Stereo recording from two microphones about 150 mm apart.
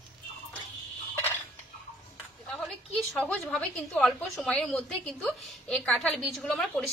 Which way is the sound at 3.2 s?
5° left (ahead or behind).